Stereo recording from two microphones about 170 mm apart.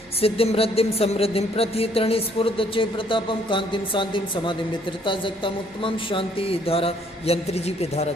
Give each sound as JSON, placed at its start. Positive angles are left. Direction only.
{"t": 0.2, "sound": "a woman's voice", "side_deg": 35}